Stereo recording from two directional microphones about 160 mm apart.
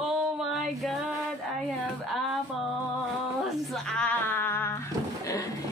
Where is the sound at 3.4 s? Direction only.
Centre (ahead or behind).